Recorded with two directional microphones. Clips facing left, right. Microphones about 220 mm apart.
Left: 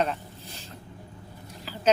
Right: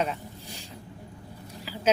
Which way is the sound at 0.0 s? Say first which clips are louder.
Left 2 dB; 10° right (ahead or behind).